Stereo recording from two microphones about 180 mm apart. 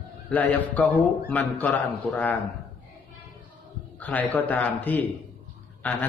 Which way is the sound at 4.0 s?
10° left (ahead or behind).